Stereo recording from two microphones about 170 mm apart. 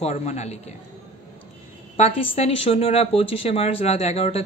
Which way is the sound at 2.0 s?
35° left (ahead or behind).